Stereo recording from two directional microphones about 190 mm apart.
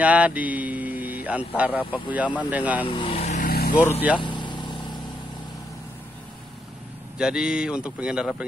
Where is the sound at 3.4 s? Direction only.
50° left (ahead or behind).